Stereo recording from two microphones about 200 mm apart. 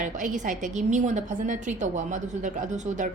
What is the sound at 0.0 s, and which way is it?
A woman's voice, 40° right (ahead or behind).